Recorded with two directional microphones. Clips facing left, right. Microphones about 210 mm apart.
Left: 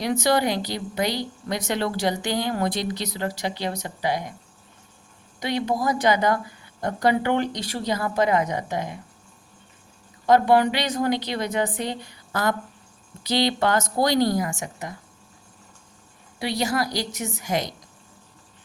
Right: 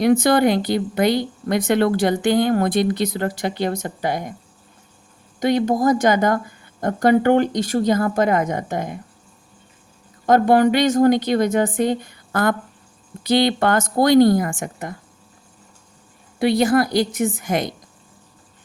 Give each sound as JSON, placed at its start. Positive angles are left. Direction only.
{"t": 0.0, "sound": "speech", "side_deg": -55}
{"t": 5.4, "sound": "speech", "side_deg": -45}
{"t": 10.2, "sound": "speech", "side_deg": -45}
{"t": 16.4, "sound": "speech", "side_deg": -55}